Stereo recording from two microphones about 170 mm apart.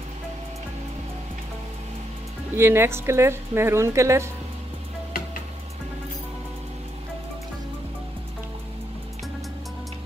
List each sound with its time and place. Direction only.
2.5 s speech: 15° right (ahead or behind)